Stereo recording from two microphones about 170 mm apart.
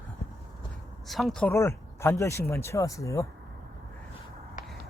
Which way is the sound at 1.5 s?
15° left (ahead or behind).